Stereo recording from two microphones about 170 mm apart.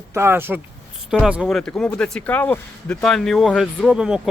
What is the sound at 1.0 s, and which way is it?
Speech, centre (ahead or behind).